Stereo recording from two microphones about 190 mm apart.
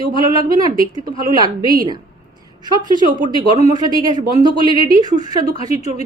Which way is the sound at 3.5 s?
35° left (ahead or behind).